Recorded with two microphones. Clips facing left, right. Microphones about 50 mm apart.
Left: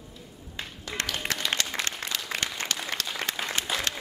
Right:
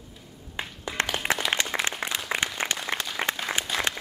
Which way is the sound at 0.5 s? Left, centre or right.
Right.